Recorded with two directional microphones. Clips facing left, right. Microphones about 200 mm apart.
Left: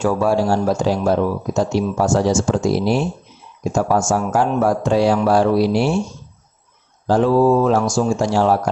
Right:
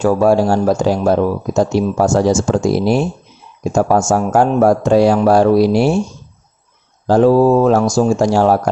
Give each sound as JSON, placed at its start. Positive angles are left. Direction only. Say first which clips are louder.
{"t": 0.0, "sound": "speech", "louder": "right 5 dB", "side_deg": -45}
{"t": 7.1, "sound": "speech", "louder": "right 4 dB", "side_deg": -40}